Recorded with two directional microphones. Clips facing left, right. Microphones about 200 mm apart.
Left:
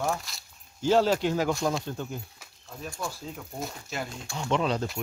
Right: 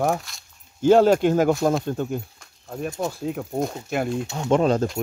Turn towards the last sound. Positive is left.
turn(degrees=-45)  # may be behind; listen again after turning